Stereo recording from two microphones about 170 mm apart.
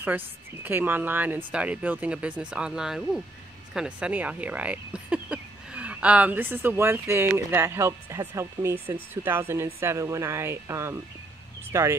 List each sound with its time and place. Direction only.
0.7 s speech: 10° right (ahead or behind)